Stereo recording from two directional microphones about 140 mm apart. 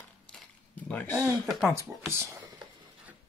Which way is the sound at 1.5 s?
5° right (ahead or behind).